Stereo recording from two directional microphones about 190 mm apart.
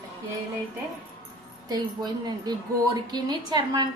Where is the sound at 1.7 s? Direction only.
20° right (ahead or behind).